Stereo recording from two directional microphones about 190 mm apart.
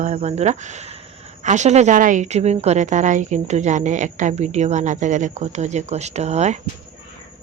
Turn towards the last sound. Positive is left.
turn(degrees=-35)  # may be behind; listen again after turning